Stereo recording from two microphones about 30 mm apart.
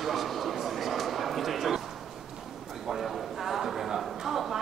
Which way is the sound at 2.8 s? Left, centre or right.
Centre.